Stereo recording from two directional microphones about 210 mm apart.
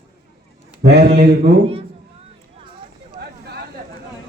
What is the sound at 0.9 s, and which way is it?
Speech, 50° right (ahead or behind).